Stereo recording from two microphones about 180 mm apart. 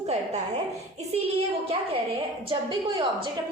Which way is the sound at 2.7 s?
25° right (ahead or behind).